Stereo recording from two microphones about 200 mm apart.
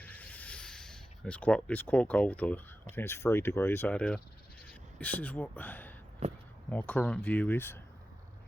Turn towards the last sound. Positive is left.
turn(degrees=10)  # may be behind; listen again after turning